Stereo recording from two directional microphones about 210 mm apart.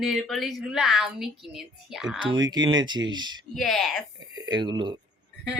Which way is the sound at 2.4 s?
20° right (ahead or behind).